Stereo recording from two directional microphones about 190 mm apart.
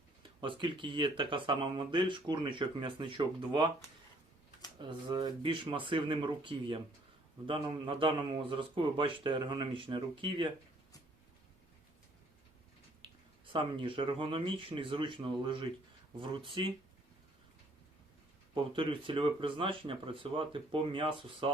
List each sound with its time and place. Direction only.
0.2 s speech: 25° right (ahead or behind)
4.8 s speech: 25° right (ahead or behind)
13.0 s speech: 25° right (ahead or behind)
18.5 s speech: 25° right (ahead or behind)